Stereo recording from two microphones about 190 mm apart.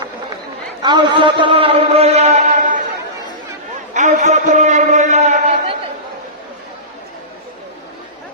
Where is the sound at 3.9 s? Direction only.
40° right (ahead or behind).